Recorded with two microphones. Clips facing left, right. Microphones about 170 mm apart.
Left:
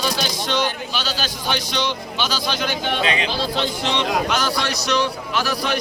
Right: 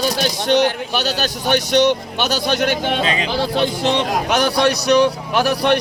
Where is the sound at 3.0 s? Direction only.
40° right (ahead or behind).